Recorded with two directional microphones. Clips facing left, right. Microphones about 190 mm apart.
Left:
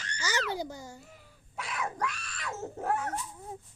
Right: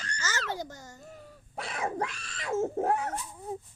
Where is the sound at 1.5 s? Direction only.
35° right (ahead or behind).